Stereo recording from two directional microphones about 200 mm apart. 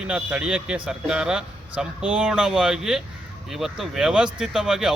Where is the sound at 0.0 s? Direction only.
5° right (ahead or behind).